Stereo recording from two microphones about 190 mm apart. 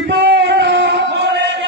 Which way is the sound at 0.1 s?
65° right (ahead or behind).